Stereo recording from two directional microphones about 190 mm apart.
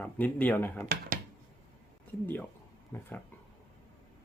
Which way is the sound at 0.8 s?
55° right (ahead or behind).